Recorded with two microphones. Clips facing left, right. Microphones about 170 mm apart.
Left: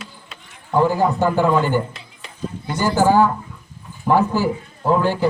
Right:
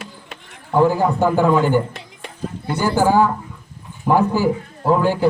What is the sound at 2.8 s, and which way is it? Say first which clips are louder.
A man's voice: even; 10° right (ahead or behind).